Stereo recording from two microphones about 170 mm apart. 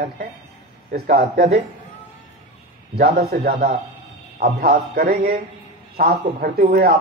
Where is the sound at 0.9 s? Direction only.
65° right (ahead or behind).